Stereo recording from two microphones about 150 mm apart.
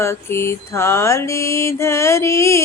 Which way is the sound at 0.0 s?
15° left (ahead or behind).